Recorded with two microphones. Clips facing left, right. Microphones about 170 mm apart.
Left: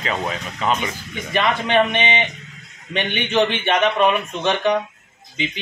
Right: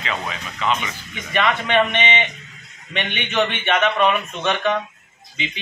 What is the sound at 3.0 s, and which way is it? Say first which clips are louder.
Speech: left 3 dB; 35° left (ahead or behind).